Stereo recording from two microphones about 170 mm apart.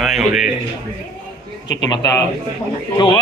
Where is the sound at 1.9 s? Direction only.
20° left (ahead or behind).